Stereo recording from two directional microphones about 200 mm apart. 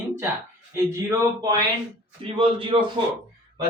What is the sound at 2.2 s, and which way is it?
Speech, 25° right (ahead or behind).